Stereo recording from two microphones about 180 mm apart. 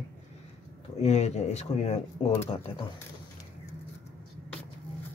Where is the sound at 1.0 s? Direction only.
40° left (ahead or behind).